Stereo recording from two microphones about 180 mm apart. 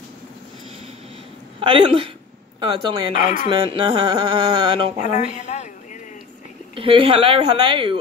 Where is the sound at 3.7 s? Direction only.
25° right (ahead or behind).